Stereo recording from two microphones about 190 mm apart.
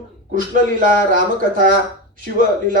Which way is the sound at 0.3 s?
45° right (ahead or behind).